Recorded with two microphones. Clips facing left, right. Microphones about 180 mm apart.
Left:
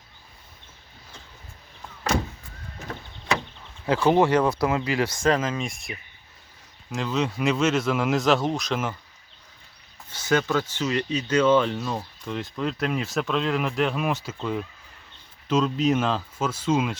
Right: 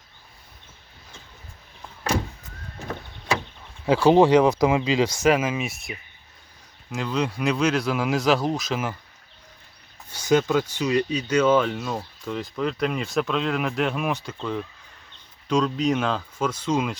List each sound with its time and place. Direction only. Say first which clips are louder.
3.8 s speech: right 4 dB; 10° right (ahead or behind)
10.1 s speech: right 3 dB; 15° right (ahead or behind); by 17.0 s 5° left (ahead or behind)